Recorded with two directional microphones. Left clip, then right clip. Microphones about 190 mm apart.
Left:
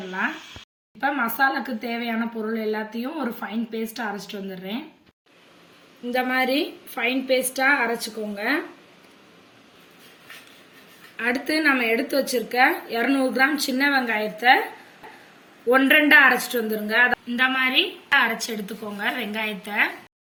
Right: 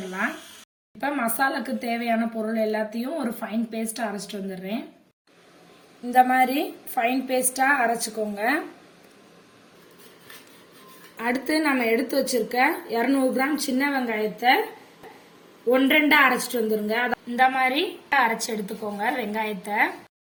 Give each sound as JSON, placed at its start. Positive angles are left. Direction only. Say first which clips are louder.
{"t": 0.9, "sound": "a woman's voice", "louder": "left 2 dB", "side_deg": -25}
{"t": 6.1, "sound": "a woman's voice", "louder": "right 4 dB", "side_deg": -40}
{"t": 11.2, "sound": "a woman's voice", "louder": "left 2 dB", "side_deg": -35}
{"t": 15.7, "sound": "a woman's voice", "louder": "left 3 dB", "side_deg": -35}